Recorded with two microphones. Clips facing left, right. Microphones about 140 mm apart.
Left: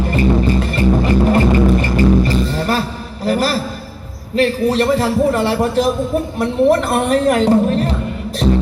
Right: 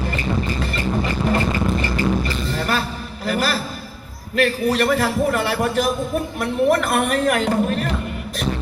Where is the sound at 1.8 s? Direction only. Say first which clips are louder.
Left 7 dB; 40° left (ahead or behind).